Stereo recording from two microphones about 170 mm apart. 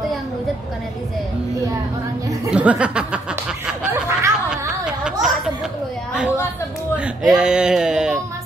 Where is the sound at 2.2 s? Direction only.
20° right (ahead or behind).